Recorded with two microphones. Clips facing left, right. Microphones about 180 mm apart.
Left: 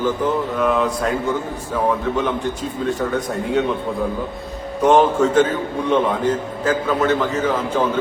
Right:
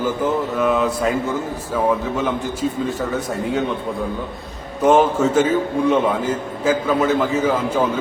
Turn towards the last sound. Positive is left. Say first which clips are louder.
# right 1 dB
turn(degrees=-10)  # may be behind; listen again after turning